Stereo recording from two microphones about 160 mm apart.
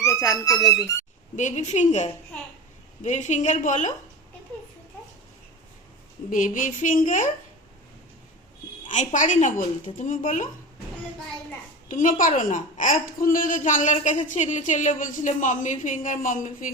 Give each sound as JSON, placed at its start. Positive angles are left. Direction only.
{"t": 0.0, "sound": "speech", "side_deg": 20}
{"t": 1.4, "sound": "a woman's voice", "side_deg": 50}
{"t": 6.3, "sound": "a woman's voice", "side_deg": 55}
{"t": 8.9, "sound": "a woman's voice", "side_deg": 50}
{"t": 11.9, "sound": "a woman's voice", "side_deg": 55}